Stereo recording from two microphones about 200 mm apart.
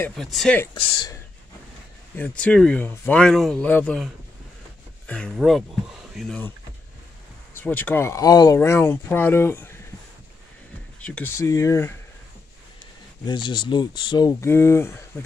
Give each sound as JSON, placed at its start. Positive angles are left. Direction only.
{"t": 0.0, "sound": "speech", "side_deg": 0}
{"t": 0.7, "sound": "speech", "side_deg": 25}
{"t": 2.1, "sound": "speech", "side_deg": 5}
{"t": 7.5, "sound": "speech", "side_deg": 10}
{"t": 11.0, "sound": "speech", "side_deg": 5}
{"t": 13.2, "sound": "speech", "side_deg": 20}